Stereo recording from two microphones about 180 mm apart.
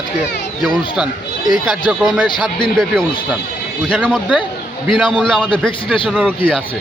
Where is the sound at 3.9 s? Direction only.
5° right (ahead or behind).